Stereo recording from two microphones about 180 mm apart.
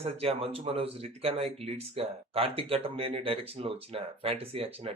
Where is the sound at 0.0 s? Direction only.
35° right (ahead or behind).